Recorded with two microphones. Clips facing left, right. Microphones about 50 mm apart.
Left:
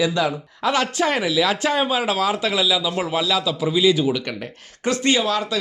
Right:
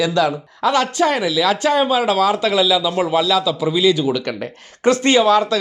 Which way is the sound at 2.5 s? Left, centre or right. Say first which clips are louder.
Right 5 dB; centre.